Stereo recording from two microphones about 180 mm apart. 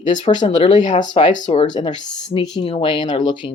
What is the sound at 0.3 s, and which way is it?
Speech, 25° left (ahead or behind).